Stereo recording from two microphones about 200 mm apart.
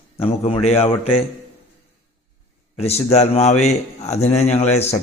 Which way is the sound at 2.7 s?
30° left (ahead or behind).